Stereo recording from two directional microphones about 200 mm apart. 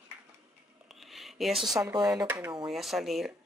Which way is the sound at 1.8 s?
5° right (ahead or behind).